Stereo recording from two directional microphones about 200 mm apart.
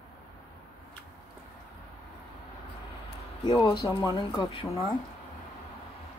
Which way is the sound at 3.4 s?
20° left (ahead or behind).